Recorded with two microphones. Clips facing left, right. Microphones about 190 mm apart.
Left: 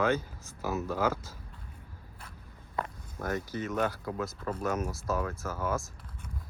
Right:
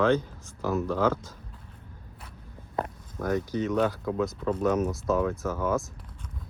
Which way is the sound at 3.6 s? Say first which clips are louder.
Right 5 dB; 5° left (ahead or behind).